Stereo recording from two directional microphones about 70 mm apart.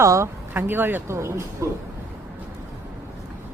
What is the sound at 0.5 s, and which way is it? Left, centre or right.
Speech, right.